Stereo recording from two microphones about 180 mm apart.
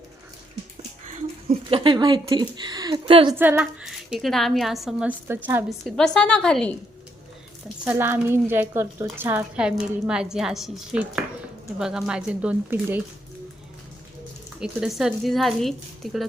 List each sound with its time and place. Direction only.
1.0 s a sound: 45° right (ahead or behind)
1.7 s a woman's voice: 30° right (ahead or behind)
3.3 s a woman's voice: 10° right (ahead or behind)
5.6 s a woman's voice: centre (ahead or behind)
7.9 s a woman's voice: 10° right (ahead or behind)
14.6 s a woman's voice: 5° right (ahead or behind)